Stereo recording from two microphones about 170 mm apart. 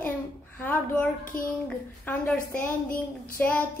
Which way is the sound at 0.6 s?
10° left (ahead or behind).